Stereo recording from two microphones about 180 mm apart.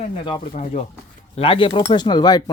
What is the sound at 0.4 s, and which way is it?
Speech, 40° left (ahead or behind).